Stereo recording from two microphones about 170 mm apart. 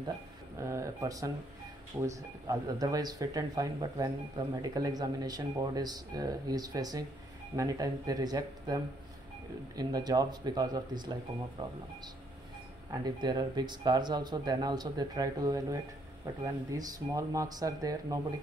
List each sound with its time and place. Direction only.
0.6 s speech: 15° right (ahead or behind)
13.0 s speech: 25° right (ahead or behind)